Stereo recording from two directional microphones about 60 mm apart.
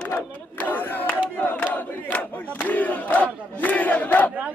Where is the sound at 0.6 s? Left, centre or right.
Left.